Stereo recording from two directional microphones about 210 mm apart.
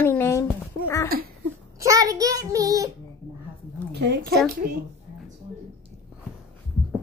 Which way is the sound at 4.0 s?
50° right (ahead or behind).